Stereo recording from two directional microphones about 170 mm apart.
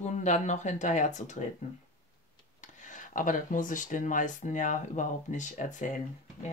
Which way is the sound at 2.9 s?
50° left (ahead or behind).